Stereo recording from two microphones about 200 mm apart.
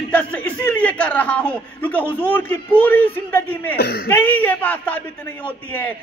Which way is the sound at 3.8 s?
50° left (ahead or behind).